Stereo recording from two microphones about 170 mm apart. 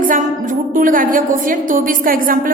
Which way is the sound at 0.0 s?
50° right (ahead or behind).